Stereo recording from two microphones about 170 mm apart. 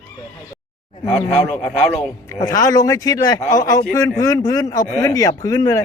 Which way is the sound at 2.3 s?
20° left (ahead or behind).